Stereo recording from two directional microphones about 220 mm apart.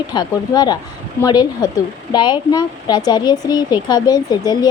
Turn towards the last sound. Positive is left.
turn(degrees=20)  # may be behind; listen again after turning